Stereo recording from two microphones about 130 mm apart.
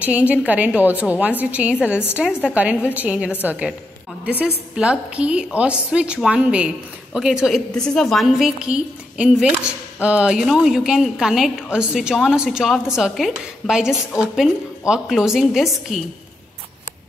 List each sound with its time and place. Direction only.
0.0 s a woman's voice: 10° right (ahead or behind)
1.9 s a woman's voice: 15° left (ahead or behind)
2.1 s a woman's voice: 10° right (ahead or behind)